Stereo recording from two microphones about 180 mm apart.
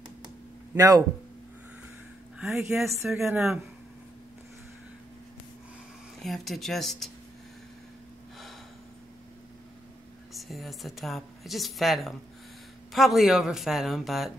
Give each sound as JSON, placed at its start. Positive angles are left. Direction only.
{"t": 0.7, "sound": "speech", "side_deg": -20}
{"t": 2.3, "sound": "a sound", "side_deg": 0}
{"t": 2.8, "sound": "speech", "side_deg": 0}
{"t": 6.2, "sound": "speech", "side_deg": 0}
{"t": 10.3, "sound": "speech", "side_deg": 0}